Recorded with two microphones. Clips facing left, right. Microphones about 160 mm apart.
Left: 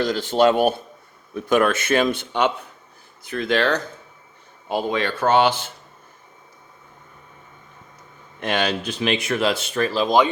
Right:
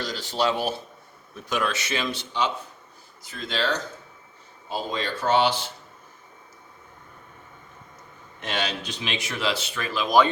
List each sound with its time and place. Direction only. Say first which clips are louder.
0.0 s speech: left 8 dB; 50° left (ahead or behind)
8.4 s speech: left 7 dB; 60° left (ahead or behind); by 10.1 s 40° left (ahead or behind)